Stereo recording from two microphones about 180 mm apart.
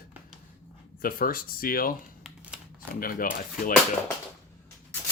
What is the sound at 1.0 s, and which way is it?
Speech, 55° left (ahead or behind).